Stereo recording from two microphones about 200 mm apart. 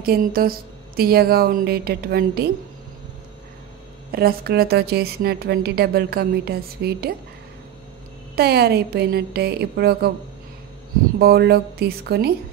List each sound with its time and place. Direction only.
0.0 s a woman's voice: 50° right (ahead or behind)
4.1 s a woman's voice: 50° right (ahead or behind)
8.4 s a woman's voice: 50° right (ahead or behind)
11.1 s a woman's voice: 50° right (ahead or behind)